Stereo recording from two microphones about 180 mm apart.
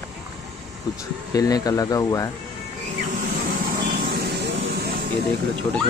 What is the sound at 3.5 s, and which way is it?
Vehicle, 55° right (ahead or behind).